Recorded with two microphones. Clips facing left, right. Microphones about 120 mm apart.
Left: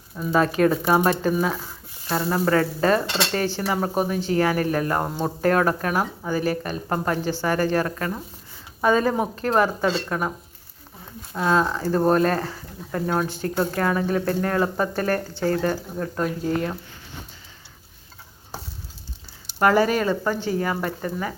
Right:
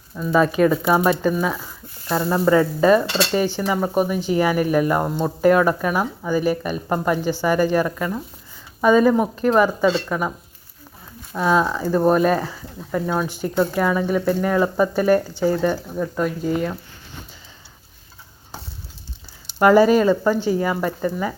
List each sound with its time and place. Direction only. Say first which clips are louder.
0.3 s speech: right 3 dB; centre (ahead or behind)
2.4 s speech: right 5 dB; 10° right (ahead or behind)
11.3 s speech: right 2 dB; 5° right (ahead or behind)
19.5 s speech: right 5 dB; 20° right (ahead or behind)